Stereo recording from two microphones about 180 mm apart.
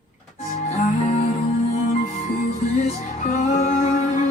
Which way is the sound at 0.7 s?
40° left (ahead or behind).